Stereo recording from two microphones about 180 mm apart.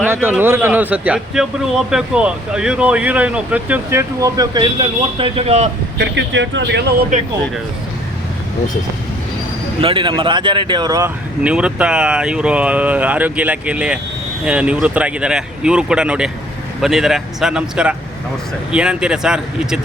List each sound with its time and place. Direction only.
0.0 s a man's voice: 10° right (ahead or behind); by 5.6 s 35° right (ahead or behind)
6.0 s speech: 80° right
9.8 s speech: 30° right (ahead or behind)
11.4 s a man's voice: 5° right (ahead or behind)